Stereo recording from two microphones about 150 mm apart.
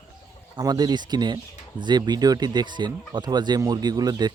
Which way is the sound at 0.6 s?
25° right (ahead or behind).